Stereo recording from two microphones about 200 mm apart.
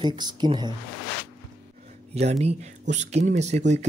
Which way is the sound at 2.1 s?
35° right (ahead or behind).